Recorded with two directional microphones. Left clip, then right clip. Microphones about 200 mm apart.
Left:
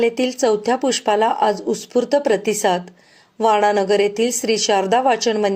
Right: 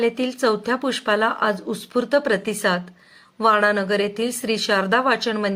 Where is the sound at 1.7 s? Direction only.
10° left (ahead or behind).